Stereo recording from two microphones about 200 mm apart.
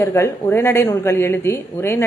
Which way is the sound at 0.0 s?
15° left (ahead or behind).